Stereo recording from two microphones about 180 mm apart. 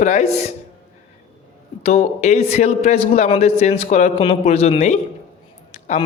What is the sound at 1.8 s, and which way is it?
Speech, 35° left (ahead or behind).